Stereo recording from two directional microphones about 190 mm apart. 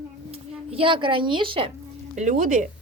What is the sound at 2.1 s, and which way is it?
Speech, 40° right (ahead or behind).